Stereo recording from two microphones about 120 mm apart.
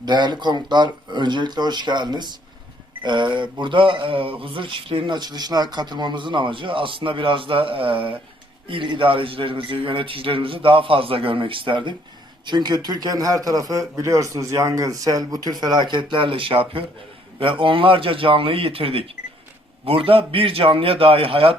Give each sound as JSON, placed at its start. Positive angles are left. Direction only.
{"t": 0.0, "sound": "speech", "side_deg": -40}